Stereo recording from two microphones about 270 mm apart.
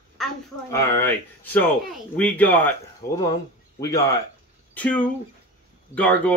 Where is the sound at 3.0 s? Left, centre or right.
Left.